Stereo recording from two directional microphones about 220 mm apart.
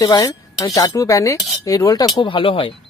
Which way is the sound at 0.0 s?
15° left (ahead or behind).